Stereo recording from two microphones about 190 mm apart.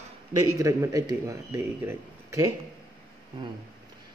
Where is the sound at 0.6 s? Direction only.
15° right (ahead or behind).